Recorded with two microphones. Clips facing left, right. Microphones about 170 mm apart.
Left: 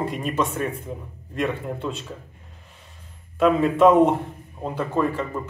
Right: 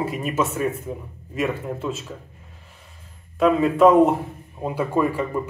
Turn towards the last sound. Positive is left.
turn(degrees=-10)  # may be behind; listen again after turning